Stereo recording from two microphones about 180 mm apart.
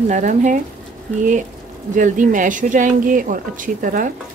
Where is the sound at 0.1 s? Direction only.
45° right (ahead or behind).